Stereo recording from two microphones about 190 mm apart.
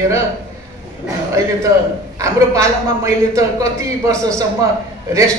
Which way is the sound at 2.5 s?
15° right (ahead or behind).